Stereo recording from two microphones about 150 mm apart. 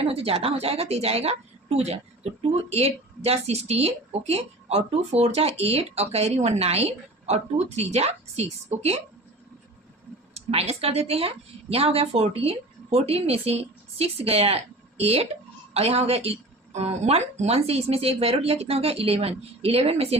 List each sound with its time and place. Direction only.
0.0 s a woman's voice: 40° right (ahead or behind)
10.3 s a woman's voice: 45° right (ahead or behind)